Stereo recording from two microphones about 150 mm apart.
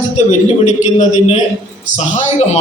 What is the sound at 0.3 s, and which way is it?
A man's voice, 50° left (ahead or behind).